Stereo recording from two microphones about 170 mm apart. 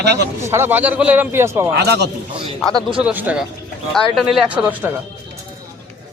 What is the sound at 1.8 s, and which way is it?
Speech, 75° right (ahead or behind).